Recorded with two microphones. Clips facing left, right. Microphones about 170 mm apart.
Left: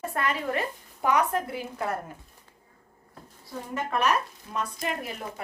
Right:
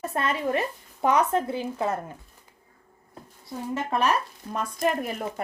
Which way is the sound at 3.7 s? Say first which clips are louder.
Right 1 dB; 30° right (ahead or behind).